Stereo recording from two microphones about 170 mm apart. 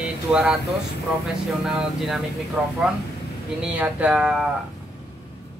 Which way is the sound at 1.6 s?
Centre (ahead or behind).